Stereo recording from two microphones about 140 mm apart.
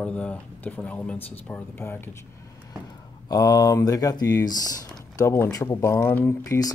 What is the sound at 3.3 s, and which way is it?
Speech, 25° left (ahead or behind).